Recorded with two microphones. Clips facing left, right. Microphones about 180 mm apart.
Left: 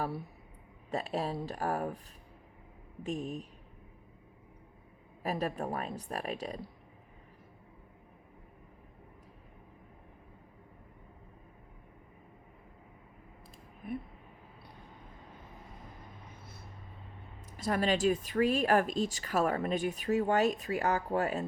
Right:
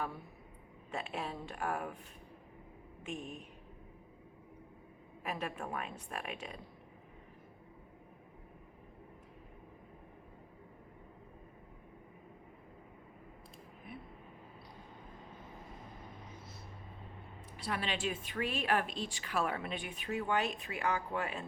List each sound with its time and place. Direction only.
0.9 s speech: 40° left (ahead or behind)
3.0 s speech: 40° left (ahead or behind)
5.2 s speech: 35° left (ahead or behind)
13.8 s speech: 50° left (ahead or behind)
17.6 s speech: 45° left (ahead or behind)